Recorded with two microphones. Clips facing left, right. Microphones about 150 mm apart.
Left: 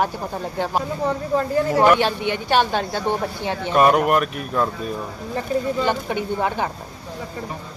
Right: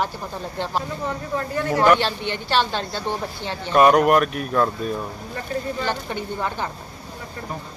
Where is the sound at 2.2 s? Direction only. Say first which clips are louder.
Left 2 dB; 15° left (ahead or behind).